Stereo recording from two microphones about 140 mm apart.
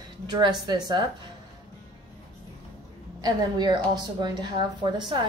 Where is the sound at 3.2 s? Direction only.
30° right (ahead or behind).